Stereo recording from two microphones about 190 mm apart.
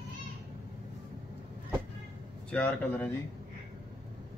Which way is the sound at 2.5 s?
10° left (ahead or behind).